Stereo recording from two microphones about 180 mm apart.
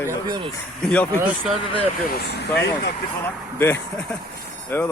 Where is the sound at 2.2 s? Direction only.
65° left (ahead or behind).